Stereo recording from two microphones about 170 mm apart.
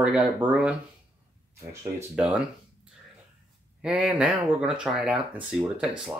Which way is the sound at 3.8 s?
5° right (ahead or behind).